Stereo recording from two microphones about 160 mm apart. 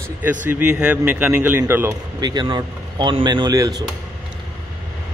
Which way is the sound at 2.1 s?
25° right (ahead or behind).